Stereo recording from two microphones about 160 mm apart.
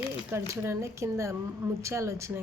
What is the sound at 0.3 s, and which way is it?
Speech, 15° right (ahead or behind).